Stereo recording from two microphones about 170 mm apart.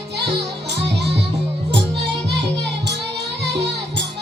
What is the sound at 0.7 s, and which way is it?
Music, 80° right.